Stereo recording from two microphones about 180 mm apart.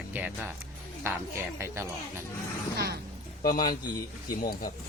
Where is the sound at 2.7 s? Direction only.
65° right (ahead or behind).